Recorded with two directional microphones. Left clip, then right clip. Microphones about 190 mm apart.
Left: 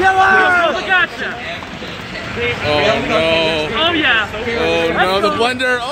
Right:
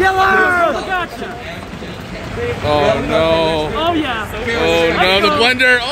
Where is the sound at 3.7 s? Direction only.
65° right (ahead or behind).